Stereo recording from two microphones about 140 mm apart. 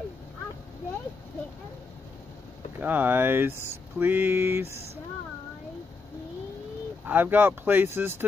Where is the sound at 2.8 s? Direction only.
15° right (ahead or behind).